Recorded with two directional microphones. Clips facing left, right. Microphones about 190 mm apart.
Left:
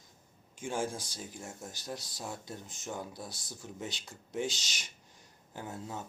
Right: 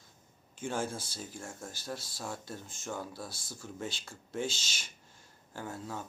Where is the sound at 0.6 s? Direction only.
10° left (ahead or behind).